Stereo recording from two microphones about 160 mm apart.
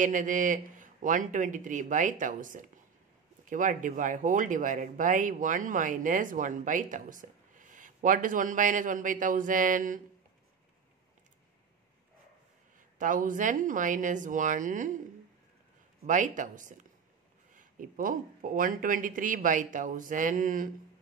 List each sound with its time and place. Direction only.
0.0 s speech: 55° right (ahead or behind)
13.0 s speech: 55° right (ahead or behind)
16.1 s speech: 55° right (ahead or behind)